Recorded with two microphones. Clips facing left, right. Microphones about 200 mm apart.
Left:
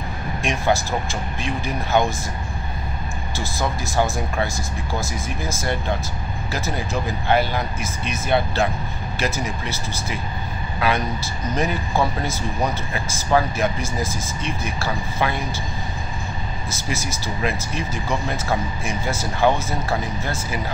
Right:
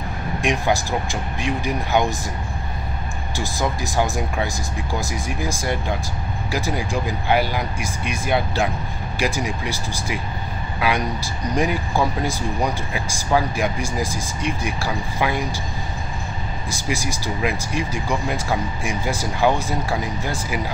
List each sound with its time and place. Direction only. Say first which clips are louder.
0.4 s speech: even; 15° right (ahead or behind)
3.3 s speech: right 2 dB; 15° right (ahead or behind)
16.7 s speech: right 3 dB; 15° right (ahead or behind)